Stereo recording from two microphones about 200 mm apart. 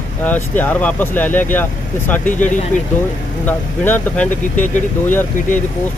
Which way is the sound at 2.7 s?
40° left (ahead or behind).